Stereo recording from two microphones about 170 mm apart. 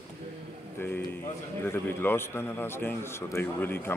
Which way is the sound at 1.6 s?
15° left (ahead or behind).